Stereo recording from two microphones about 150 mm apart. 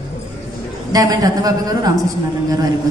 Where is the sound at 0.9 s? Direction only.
25° right (ahead or behind).